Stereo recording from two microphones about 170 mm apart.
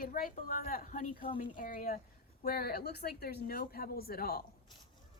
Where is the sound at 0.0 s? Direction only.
50° left (ahead or behind).